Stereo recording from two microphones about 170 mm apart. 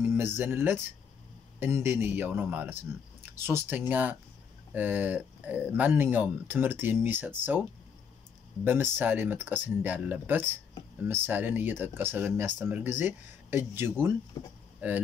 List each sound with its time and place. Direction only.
0.0 s speech: 10° right (ahead or behind)
8.6 s speech: 15° right (ahead or behind)
14.3 s speech: 25° left (ahead or behind)
14.8 s speech: 10° right (ahead or behind)